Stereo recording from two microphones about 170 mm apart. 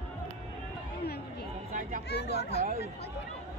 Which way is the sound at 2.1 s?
80° left.